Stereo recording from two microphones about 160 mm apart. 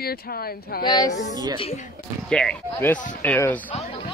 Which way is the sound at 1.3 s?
25° right (ahead or behind).